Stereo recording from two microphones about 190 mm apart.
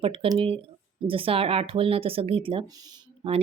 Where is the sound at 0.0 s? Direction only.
30° right (ahead or behind).